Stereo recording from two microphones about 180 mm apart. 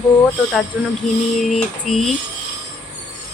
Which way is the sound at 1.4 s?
Centre (ahead or behind).